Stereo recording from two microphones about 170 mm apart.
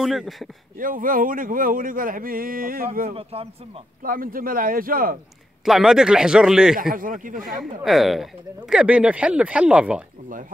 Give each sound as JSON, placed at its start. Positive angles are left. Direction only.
{"t": 0.0, "sound": "speech", "side_deg": 0}
{"t": 0.7, "sound": "speech", "side_deg": -55}
{"t": 3.1, "sound": "speech", "side_deg": -35}
{"t": 4.0, "sound": "speech", "side_deg": -55}
{"t": 5.7, "sound": "speech", "side_deg": -5}
{"t": 6.8, "sound": "speech", "side_deg": -55}
{"t": 7.8, "sound": "speech", "side_deg": 0}